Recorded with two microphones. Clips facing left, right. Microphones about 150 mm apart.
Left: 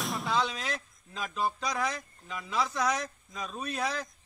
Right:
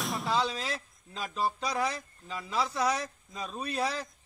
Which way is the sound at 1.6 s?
30° right (ahead or behind).